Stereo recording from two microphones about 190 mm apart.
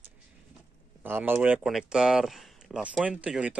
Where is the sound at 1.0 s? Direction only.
10° right (ahead or behind).